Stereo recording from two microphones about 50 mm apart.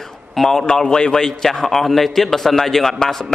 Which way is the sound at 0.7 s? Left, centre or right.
Centre.